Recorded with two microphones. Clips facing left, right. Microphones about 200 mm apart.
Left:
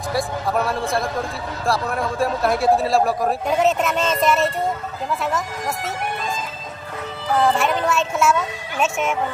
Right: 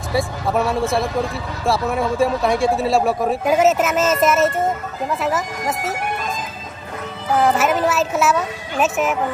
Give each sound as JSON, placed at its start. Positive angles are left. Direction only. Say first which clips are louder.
{"t": 0.1, "sound": "a man's voice", "louder": "right 2 dB", "side_deg": 0}
{"t": 7.3, "sound": "a man's voice", "louder": "right 2 dB", "side_deg": 0}